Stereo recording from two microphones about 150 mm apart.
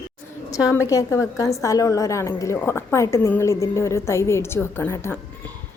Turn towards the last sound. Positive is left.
turn(degrees=15)  # may be behind; listen again after turning